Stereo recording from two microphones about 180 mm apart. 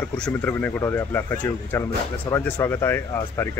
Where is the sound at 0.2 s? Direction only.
10° left (ahead or behind).